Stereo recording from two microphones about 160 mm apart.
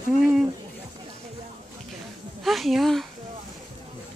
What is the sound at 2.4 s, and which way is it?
Speech, centre (ahead or behind).